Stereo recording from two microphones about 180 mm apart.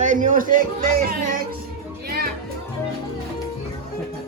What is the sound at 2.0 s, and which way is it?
Music, 60° right (ahead or behind).